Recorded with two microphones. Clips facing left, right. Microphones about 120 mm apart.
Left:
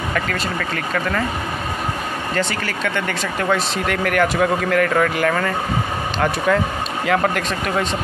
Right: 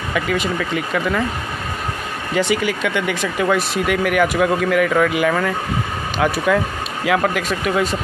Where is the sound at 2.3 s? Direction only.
10° right (ahead or behind).